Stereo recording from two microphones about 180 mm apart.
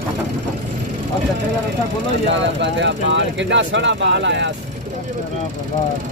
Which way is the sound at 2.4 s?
85° right.